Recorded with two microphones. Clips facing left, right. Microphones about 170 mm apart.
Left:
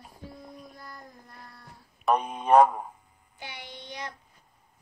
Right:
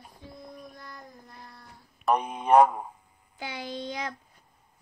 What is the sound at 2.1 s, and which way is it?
Speech, 15° right (ahead or behind).